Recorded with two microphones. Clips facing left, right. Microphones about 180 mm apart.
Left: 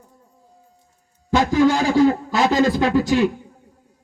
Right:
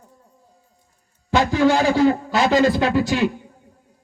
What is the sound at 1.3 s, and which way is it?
A man's voice, 45° left (ahead or behind).